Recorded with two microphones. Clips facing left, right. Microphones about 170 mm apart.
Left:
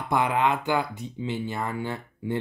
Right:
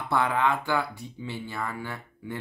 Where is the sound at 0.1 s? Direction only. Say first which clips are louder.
Left 2 dB; 20° left (ahead or behind).